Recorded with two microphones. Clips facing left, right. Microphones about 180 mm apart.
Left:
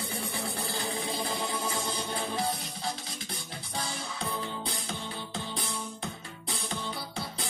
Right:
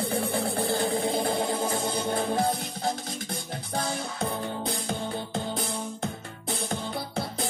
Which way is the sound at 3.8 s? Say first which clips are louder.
Right 6 dB; 50° right (ahead or behind).